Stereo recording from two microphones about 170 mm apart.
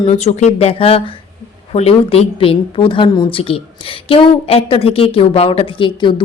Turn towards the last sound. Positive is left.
turn(degrees=30)  # may be behind; listen again after turning